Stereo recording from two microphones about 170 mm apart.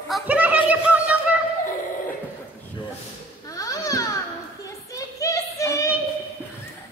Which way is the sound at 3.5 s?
20° left (ahead or behind).